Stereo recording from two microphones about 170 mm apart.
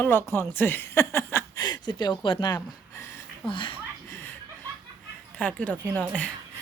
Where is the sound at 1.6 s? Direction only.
25° left (ahead or behind).